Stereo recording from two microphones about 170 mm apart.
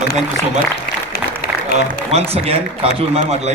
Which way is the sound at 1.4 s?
65° left (ahead or behind).